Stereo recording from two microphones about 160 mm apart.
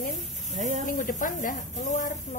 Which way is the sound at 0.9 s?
55° left (ahead or behind).